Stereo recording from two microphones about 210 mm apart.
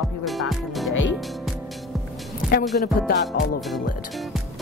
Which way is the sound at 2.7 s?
45° left (ahead or behind).